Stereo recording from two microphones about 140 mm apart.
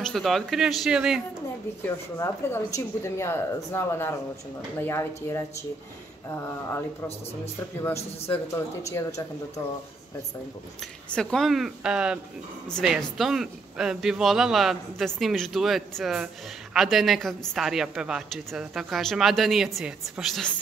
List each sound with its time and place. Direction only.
0.0 s speech: centre (ahead or behind)
1.9 s speech: 20° left (ahead or behind)
8.3 s speech: 20° left (ahead or behind)
10.8 s speech: 5° left (ahead or behind)